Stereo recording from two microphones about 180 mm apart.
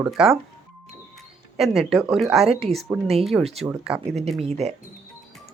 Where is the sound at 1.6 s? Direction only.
Centre (ahead or behind).